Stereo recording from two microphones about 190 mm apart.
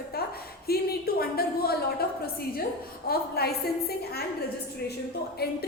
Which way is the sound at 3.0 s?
55° left (ahead or behind).